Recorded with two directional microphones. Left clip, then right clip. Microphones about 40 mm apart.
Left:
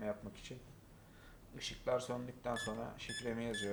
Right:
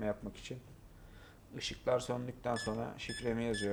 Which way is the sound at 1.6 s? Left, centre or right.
Right.